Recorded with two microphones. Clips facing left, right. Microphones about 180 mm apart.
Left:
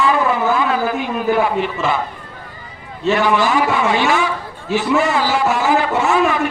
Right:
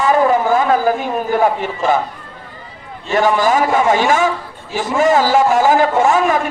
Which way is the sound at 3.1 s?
45° right (ahead or behind).